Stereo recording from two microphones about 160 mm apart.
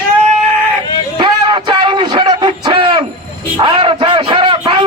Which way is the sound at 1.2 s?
30° right (ahead or behind).